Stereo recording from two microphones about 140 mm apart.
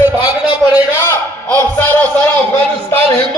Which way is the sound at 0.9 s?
15° left (ahead or behind).